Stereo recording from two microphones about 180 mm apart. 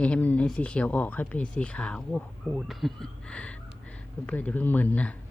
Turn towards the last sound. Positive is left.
turn(degrees=10)  # may be behind; listen again after turning